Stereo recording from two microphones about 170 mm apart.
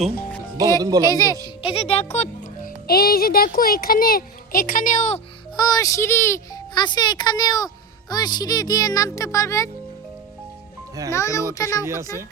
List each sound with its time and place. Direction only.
0.8 s speech: 20° right (ahead or behind)
1.0 s a child's voice: 20° left (ahead or behind)
1.6 s speech: 35° left (ahead or behind)
2.1 s music: 40° left (ahead or behind)
2.8 s a child's voice: 65° left (ahead or behind); by 5.2 s 45° left (ahead or behind)
5.5 s a child's voice: 20° left (ahead or behind)
11.1 s a child's voice: 20° left (ahead or behind)